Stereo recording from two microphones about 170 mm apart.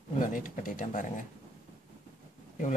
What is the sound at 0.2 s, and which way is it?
Speech, 50° left (ahead or behind).